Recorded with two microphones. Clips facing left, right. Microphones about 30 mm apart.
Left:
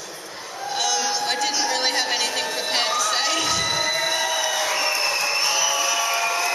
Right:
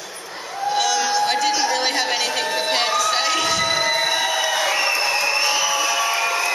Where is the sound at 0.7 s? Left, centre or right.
Centre.